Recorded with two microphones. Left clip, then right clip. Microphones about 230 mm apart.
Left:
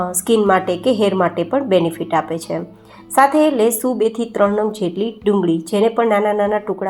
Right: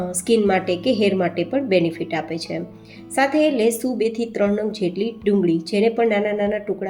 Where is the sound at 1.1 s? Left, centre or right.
Left.